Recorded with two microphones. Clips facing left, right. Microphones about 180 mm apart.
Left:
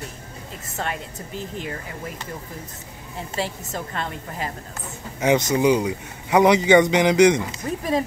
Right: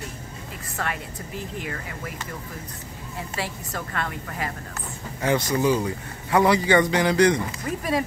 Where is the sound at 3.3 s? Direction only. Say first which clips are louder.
Left 4 dB; 25° left (ahead or behind).